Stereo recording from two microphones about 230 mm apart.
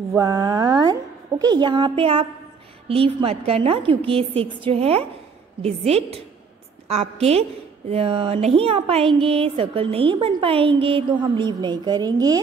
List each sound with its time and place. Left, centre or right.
0.1 s a woman's voice: centre